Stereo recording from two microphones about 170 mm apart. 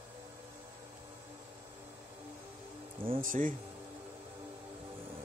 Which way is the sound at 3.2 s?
50° right (ahead or behind).